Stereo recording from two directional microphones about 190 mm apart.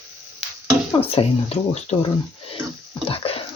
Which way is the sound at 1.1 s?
30° left (ahead or behind).